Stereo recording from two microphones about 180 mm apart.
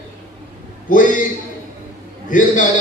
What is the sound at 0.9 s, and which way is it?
Speech, 50° left (ahead or behind).